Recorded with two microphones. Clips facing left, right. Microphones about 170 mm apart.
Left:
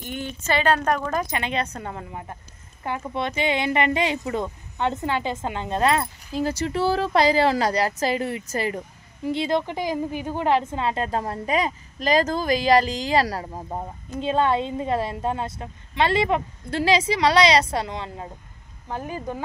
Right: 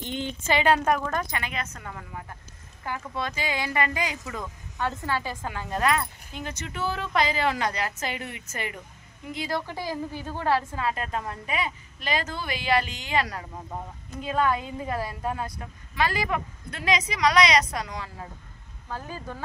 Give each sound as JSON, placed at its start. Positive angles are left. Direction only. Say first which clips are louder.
{"t": 0.1, "sound": "a woman's voice", "louder": "left 1 dB", "side_deg": -15}
{"t": 1.2, "sound": "speech", "louder": "left 6 dB", "side_deg": 25}